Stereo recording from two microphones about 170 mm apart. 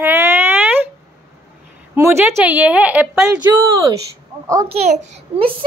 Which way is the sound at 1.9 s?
15° right (ahead or behind).